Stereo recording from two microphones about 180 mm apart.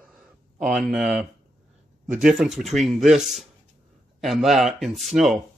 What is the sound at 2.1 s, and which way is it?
Speech, 5° right (ahead or behind).